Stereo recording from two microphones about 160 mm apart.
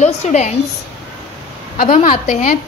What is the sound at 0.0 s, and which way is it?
Speech, 45° left (ahead or behind).